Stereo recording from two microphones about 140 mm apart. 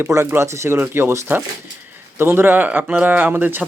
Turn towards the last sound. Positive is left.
turn(degrees=-15)  # may be behind; listen again after turning